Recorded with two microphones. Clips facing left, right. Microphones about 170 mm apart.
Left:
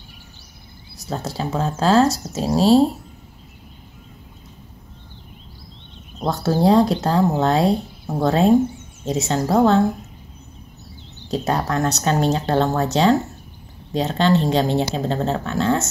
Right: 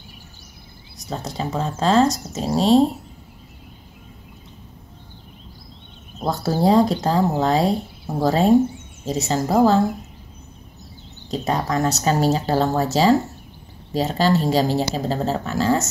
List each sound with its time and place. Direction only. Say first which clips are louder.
1.1 s speech: left 1 dB; centre (ahead or behind)
6.1 s speech: left 2 dB; centre (ahead or behind)
11.2 s speech: left 1 dB; centre (ahead or behind)
13.9 s speech: left 1 dB; 5° right (ahead or behind)